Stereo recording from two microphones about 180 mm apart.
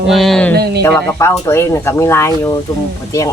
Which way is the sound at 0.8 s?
10° left (ahead or behind).